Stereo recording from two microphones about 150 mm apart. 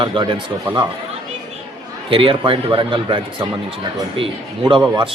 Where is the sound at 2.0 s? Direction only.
35° right (ahead or behind).